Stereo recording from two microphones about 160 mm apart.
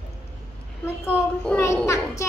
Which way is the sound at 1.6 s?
20° left (ahead or behind).